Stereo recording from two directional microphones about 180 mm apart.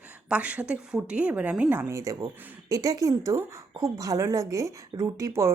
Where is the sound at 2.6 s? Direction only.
20° right (ahead or behind).